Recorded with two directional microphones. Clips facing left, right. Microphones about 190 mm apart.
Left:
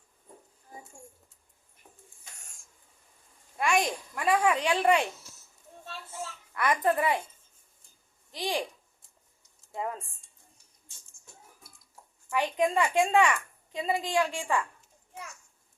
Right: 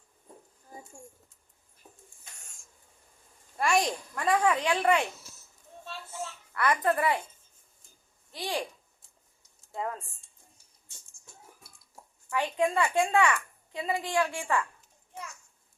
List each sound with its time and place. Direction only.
3.6 s a child's voice: centre (ahead or behind)
4.1 s a woman's voice: 10° left (ahead or behind)
6.5 s a woman's voice: 15° left (ahead or behind)
8.3 s speech: 15° left (ahead or behind)
9.7 s a woman's voice: 20° left (ahead or behind)
12.3 s a woman's voice: 15° left (ahead or behind)